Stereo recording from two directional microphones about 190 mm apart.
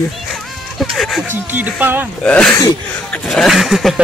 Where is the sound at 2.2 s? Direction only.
5° left (ahead or behind).